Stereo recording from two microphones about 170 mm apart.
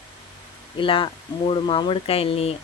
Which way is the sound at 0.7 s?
30° left (ahead or behind).